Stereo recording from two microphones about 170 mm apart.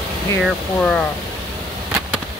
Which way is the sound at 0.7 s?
10° left (ahead or behind).